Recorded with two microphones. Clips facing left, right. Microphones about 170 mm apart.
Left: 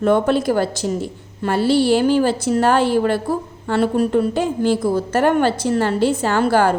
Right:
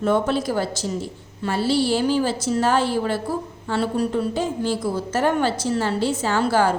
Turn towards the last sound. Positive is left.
turn(degrees=55)  # may be behind; listen again after turning